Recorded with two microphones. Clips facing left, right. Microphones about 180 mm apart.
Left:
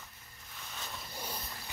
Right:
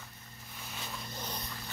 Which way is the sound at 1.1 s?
10° left (ahead or behind).